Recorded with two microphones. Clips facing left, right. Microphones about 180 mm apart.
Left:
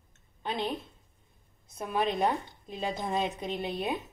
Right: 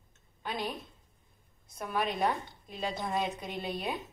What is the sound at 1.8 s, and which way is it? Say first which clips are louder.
Speech: left 3 dB; 20° left (ahead or behind).